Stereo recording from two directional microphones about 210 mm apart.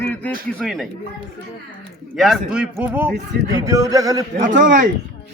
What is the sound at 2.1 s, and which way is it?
A man's voice, centre (ahead or behind).